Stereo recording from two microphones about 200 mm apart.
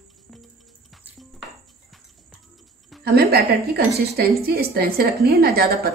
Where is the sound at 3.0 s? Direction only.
50° right (ahead or behind).